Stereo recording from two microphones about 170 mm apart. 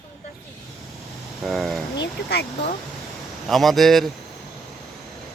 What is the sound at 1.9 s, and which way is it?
Speech, 80° left.